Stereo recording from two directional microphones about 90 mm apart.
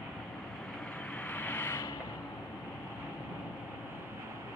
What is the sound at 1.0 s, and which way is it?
Vehicle, 15° left (ahead or behind).